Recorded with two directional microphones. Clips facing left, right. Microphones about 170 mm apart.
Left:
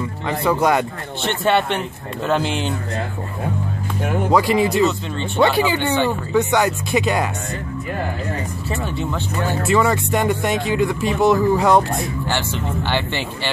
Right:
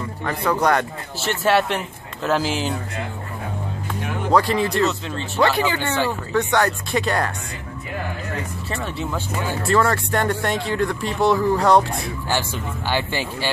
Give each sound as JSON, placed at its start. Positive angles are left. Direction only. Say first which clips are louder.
{"t": 0.6, "sound": "speech", "louder": "left 1 dB", "side_deg": 20}
{"t": 1.2, "sound": "speech", "louder": "left 1 dB", "side_deg": -5}
{"t": 4.4, "sound": "speech", "louder": "left 2 dB", "side_deg": 15}
{"t": 4.6, "sound": "speech", "louder": "left 3 dB", "side_deg": 0}
{"t": 8.6, "sound": "speech", "louder": "left 4 dB", "side_deg": 0}
{"t": 12.3, "sound": "speech", "louder": "left 2 dB", "side_deg": -10}